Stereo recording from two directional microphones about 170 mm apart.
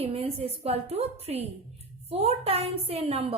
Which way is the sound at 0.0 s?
35° right (ahead or behind).